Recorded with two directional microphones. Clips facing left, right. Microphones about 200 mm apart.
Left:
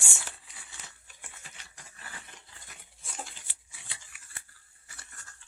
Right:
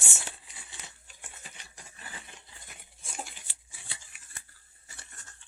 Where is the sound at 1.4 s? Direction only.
20° right (ahead or behind).